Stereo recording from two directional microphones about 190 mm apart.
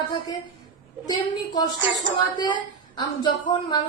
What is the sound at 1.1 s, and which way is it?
Speech, 20° left (ahead or behind).